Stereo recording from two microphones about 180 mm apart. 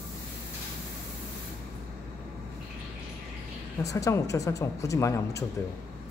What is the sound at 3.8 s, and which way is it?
A woman's voice, 20° left (ahead or behind).